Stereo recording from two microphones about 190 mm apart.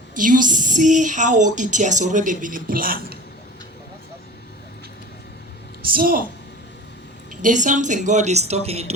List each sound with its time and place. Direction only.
0.2 s a woman's voice: 45° right (ahead or behind)
5.9 s a woman's voice: 50° right (ahead or behind)
7.4 s a woman's voice: 40° right (ahead or behind)